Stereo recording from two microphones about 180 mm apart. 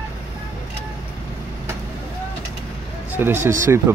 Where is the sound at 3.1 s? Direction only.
15° right (ahead or behind).